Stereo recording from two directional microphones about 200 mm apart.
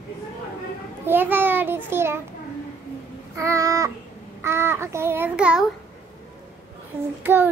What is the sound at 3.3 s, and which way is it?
Child singing, 15° right (ahead or behind).